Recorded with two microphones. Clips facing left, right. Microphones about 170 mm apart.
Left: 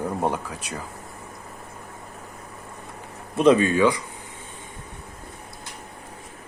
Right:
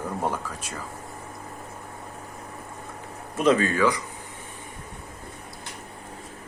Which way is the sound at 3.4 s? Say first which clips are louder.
Left 4 dB; 20° left (ahead or behind).